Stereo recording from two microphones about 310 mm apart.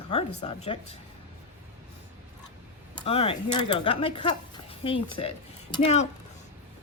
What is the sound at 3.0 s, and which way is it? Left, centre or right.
A woman's voice, centre.